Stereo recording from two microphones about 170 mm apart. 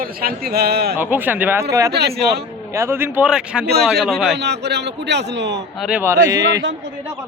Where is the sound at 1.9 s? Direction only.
70° right (ahead or behind).